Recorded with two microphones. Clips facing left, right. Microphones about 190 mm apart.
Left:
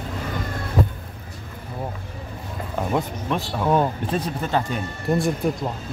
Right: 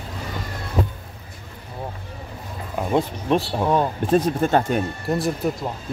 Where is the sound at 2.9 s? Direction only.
30° right (ahead or behind).